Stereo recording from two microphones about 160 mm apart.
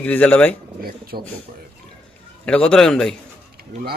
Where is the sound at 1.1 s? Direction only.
65° right (ahead or behind).